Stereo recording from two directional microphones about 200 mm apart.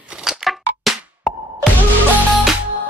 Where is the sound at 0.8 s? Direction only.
Centre (ahead or behind).